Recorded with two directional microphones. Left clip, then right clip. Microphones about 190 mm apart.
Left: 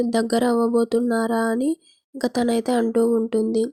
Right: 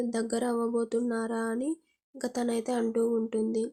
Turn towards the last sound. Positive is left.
turn(degrees=35)  # may be behind; listen again after turning